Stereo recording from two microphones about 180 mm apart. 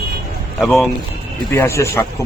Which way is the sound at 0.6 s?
Centre (ahead or behind).